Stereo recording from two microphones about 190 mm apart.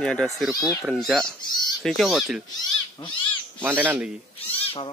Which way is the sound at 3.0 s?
25° left (ahead or behind).